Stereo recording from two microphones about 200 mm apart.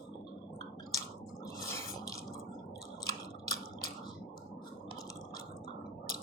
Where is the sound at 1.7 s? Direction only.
15° left (ahead or behind).